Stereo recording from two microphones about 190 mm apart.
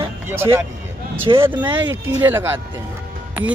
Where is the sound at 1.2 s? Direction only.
30° right (ahead or behind).